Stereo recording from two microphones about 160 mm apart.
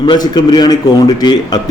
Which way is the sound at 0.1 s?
25° left (ahead or behind).